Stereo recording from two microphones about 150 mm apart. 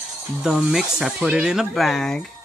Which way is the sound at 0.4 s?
5° right (ahead or behind).